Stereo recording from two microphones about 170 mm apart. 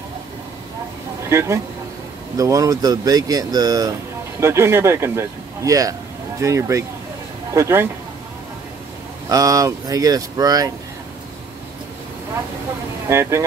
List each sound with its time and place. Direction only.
1.3 s speech: 15° right (ahead or behind)
9.3 s speech: 20° right (ahead or behind)
13.1 s speech: 15° right (ahead or behind)